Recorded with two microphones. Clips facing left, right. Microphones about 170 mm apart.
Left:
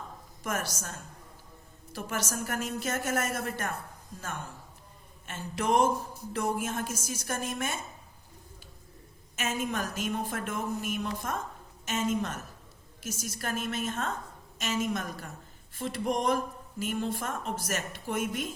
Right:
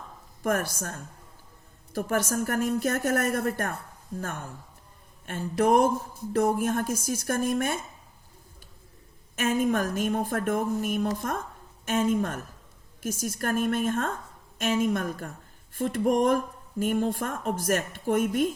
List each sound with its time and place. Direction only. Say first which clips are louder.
0.4 s speech: right 7 dB; 50° right (ahead or behind)
1.9 s a woman's voice: right 8 dB; 50° right (ahead or behind)
5.2 s speech: right 7 dB; 50° right (ahead or behind)
9.3 s speech: right 8 dB; 50° right (ahead or behind)